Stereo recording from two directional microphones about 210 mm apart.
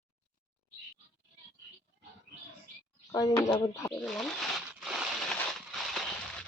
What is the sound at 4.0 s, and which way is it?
Crumpling, centre (ahead or behind).